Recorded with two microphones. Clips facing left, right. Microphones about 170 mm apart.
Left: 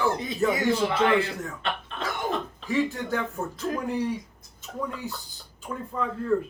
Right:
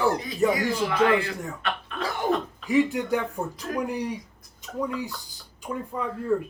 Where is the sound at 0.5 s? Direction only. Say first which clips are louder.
Left 1 dB; 25° left (ahead or behind).